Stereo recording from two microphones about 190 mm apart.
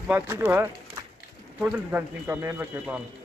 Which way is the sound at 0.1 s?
10° right (ahead or behind).